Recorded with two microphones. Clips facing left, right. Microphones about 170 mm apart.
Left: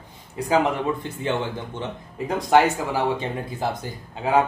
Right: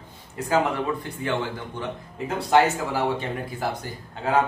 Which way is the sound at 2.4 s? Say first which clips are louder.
Left 1 dB; 15° left (ahead or behind).